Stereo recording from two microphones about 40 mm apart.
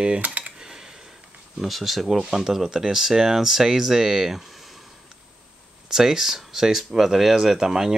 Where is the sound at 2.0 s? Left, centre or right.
Centre.